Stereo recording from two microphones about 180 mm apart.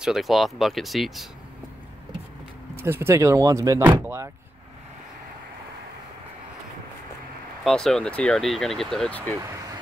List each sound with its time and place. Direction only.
0.0 s speech: centre (ahead or behind)
2.7 s speech: 15° right (ahead or behind)
7.6 s speech: 5° left (ahead or behind)